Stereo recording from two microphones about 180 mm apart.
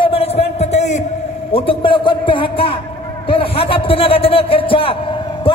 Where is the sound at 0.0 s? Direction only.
30° left (ahead or behind).